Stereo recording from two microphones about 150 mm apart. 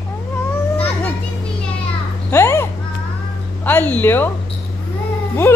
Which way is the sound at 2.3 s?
15° left (ahead or behind).